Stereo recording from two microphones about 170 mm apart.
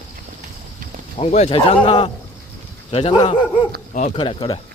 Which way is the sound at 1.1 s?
40° left (ahead or behind).